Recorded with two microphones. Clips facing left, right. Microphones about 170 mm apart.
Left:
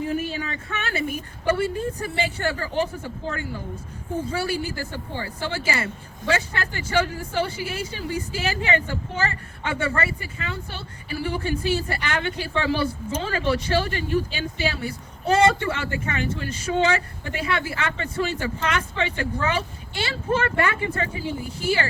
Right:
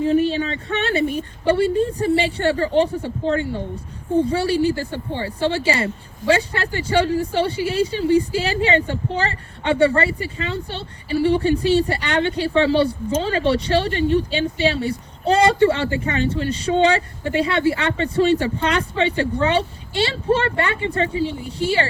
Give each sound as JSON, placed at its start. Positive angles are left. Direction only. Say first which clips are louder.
{"t": 0.0, "sound": "a woman's voice", "louder": "right 9 dB", "side_deg": -25}